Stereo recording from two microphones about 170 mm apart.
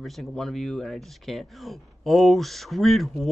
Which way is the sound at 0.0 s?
Centre (ahead or behind).